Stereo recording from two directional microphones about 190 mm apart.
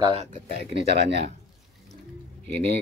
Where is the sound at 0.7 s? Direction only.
60° right (ahead or behind).